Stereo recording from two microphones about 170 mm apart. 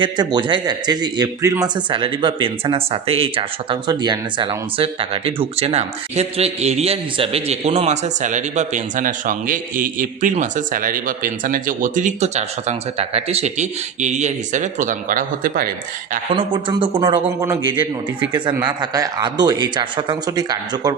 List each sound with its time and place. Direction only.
0.0 s a man's voice: 25° right (ahead or behind); by 15.7 s 55° right (ahead or behind)
16.3 s a man's voice: 30° right (ahead or behind)